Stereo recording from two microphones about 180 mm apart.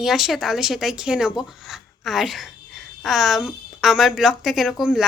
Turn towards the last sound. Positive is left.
turn(degrees=-5)  # may be behind; listen again after turning